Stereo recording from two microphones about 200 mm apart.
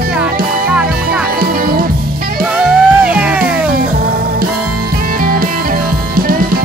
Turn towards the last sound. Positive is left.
turn(degrees=-45)  # may be behind; listen again after turning